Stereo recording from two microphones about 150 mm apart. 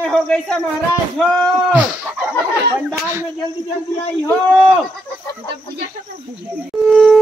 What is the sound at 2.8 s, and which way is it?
Speech, 15° right (ahead or behind).